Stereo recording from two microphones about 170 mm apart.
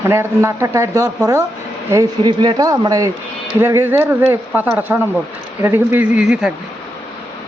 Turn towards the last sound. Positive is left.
turn(degrees=-5)  # may be behind; listen again after turning